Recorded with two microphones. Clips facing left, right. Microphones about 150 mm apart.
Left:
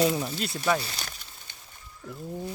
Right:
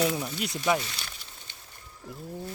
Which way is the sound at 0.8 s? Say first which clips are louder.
Left 1 dB; 35° left (ahead or behind).